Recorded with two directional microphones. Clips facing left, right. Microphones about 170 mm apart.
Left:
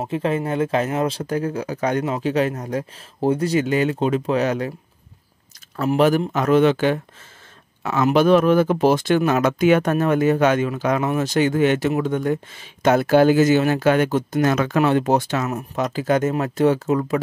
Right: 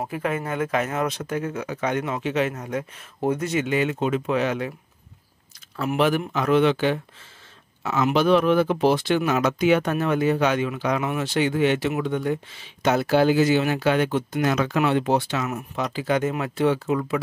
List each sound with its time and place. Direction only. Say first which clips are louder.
0.0 s speech: left 4 dB; 25° left (ahead or behind)
5.8 s speech: left 4 dB; 40° left (ahead or behind)